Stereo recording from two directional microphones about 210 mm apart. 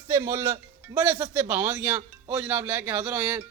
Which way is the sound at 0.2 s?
15° right (ahead or behind).